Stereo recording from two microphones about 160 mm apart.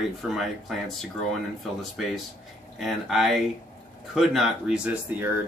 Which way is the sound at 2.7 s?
Centre (ahead or behind).